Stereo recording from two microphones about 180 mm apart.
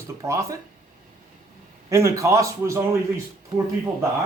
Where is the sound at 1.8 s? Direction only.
15° right (ahead or behind).